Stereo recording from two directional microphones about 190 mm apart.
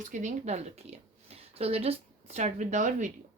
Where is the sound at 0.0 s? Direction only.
40° right (ahead or behind).